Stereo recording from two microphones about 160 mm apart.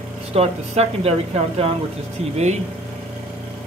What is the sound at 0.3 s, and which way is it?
A woman's voice, 40° right (ahead or behind).